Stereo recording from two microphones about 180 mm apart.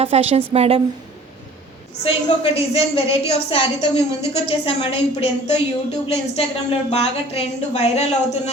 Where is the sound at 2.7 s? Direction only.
30° left (ahead or behind).